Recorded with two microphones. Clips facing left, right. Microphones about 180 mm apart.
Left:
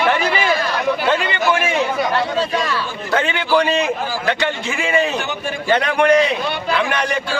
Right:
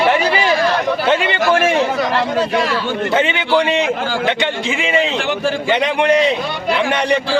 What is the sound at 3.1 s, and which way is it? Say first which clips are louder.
A man's voice: even; 20° right (ahead or behind).